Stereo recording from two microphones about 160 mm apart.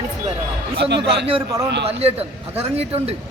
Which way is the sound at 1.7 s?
90° right.